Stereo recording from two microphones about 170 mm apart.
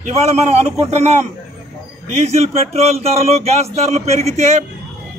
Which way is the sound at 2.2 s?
40° right (ahead or behind).